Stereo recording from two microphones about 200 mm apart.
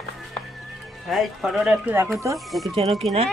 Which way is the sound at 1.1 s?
Centre (ahead or behind).